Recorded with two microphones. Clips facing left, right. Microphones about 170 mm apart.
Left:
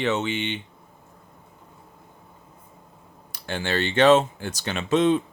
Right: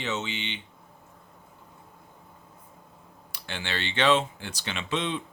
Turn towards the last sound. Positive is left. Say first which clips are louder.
# left 10 dB
turn(degrees=45)  # may be behind; listen again after turning